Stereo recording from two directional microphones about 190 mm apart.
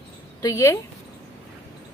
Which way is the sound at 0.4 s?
15° left (ahead or behind).